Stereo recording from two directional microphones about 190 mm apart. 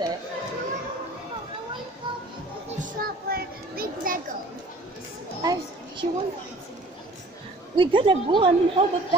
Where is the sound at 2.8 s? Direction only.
50° right (ahead or behind).